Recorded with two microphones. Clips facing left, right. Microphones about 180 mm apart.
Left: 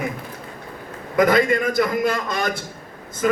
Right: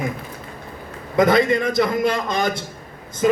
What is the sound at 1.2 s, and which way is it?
A man's voice, 25° right (ahead or behind).